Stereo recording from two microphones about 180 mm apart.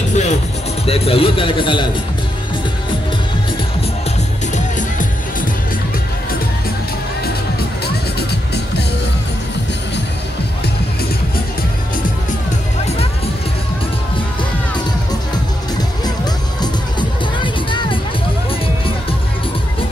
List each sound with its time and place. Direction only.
0.1 s music: 40° left (ahead or behind)
0.8 s speech: 35° left (ahead or behind)
4.6 s music: 45° left (ahead or behind)
17.0 s music: 25° left (ahead or behind)